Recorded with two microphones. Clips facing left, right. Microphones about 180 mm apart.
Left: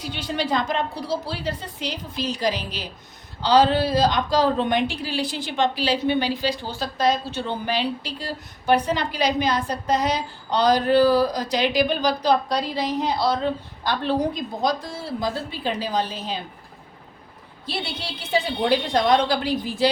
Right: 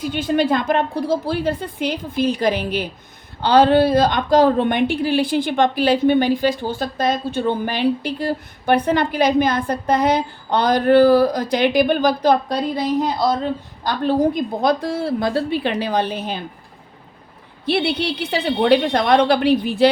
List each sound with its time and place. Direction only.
0.0 s a woman's voice: 50° right (ahead or behind)
17.7 s a woman's voice: 65° right (ahead or behind)